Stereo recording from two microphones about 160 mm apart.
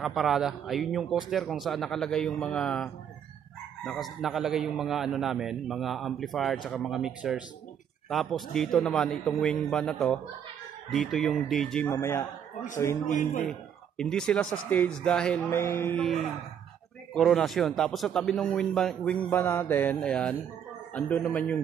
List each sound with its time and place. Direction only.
0.0 s speech: centre (ahead or behind)
11.9 s a man's voice: 15° left (ahead or behind)
13.1 s speech: 55° left (ahead or behind)
13.5 s speech: 5° left (ahead or behind)
15.5 s a man's voice: 15° left (ahead or behind)
16.0 s a man's voice: centre (ahead or behind)